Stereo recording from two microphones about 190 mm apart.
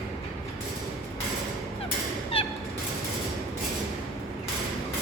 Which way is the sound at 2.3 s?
30° left (ahead or behind).